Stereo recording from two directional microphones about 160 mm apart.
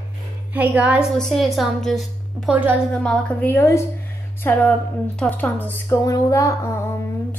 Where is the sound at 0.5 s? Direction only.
10° right (ahead or behind).